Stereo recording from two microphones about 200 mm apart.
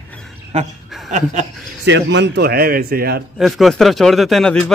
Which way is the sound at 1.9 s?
60° right (ahead or behind).